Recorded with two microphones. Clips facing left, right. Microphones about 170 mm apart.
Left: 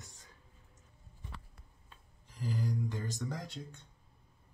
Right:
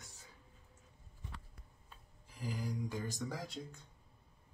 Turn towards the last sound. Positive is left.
turn(degrees=0)  # may be behind; listen again after turning